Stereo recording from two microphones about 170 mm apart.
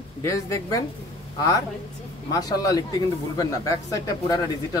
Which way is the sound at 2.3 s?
20° left (ahead or behind).